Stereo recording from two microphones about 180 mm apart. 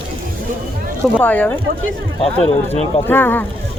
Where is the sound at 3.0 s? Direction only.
10° left (ahead or behind).